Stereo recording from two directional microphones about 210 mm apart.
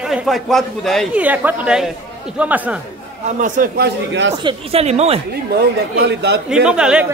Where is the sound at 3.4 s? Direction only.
40° right (ahead or behind); by 4.3 s 55° right (ahead or behind).